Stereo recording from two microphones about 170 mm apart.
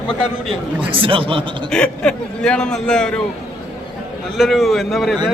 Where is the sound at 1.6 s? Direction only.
5° left (ahead or behind).